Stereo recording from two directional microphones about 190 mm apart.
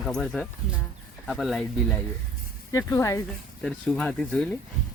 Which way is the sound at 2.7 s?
15° left (ahead or behind).